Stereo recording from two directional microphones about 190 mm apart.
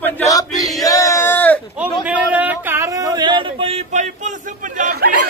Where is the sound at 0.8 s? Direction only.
15° left (ahead or behind).